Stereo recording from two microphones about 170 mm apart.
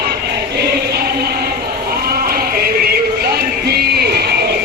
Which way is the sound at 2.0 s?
65° right (ahead or behind).